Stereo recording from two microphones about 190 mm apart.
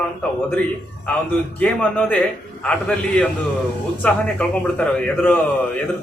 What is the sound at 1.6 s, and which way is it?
A man's voice, 10° left (ahead or behind).